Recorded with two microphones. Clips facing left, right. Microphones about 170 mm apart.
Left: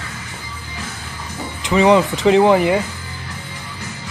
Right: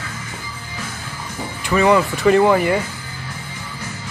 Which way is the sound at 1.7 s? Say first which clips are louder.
Left 2 dB; 20° left (ahead or behind).